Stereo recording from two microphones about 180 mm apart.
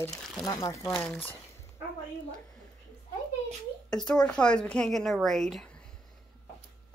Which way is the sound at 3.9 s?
5° left (ahead or behind).